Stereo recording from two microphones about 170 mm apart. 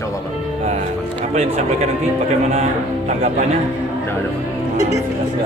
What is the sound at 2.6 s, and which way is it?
Speech, 40° right (ahead or behind).